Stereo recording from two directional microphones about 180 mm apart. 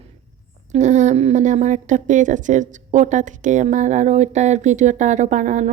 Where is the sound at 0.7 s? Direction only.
40° right (ahead or behind).